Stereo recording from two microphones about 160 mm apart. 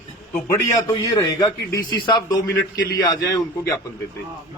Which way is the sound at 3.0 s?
20° left (ahead or behind).